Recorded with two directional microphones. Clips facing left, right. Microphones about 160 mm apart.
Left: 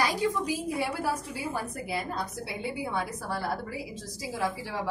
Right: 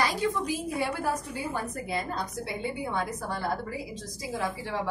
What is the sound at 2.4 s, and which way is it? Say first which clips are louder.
Speech: right 1 dB; 10° left (ahead or behind).